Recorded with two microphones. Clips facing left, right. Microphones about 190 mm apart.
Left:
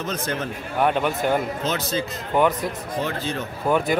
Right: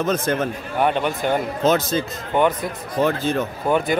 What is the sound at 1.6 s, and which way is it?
Speech, 50° right (ahead or behind).